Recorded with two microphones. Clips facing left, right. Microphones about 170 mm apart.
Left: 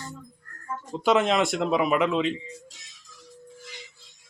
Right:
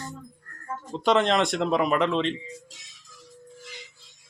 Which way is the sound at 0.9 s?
5° left (ahead or behind).